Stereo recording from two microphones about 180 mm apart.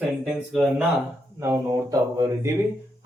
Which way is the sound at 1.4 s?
15° right (ahead or behind).